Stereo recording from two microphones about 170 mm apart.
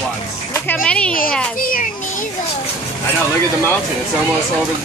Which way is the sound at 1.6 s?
55° left (ahead or behind).